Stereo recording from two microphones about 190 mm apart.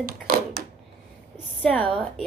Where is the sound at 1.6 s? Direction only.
5° left (ahead or behind).